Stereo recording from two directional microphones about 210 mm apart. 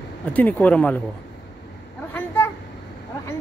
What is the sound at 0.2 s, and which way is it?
Speech, 5° left (ahead or behind).